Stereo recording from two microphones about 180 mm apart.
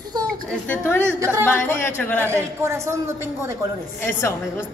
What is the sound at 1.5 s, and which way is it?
Speech, 15° left (ahead or behind).